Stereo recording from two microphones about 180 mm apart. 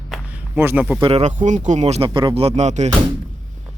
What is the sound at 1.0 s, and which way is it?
Speech, 35° right (ahead or behind).